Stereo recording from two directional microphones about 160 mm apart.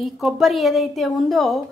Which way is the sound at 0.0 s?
Centre (ahead or behind).